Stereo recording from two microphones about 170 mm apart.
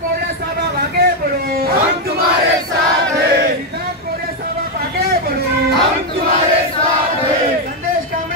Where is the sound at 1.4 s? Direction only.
65° right (ahead or behind).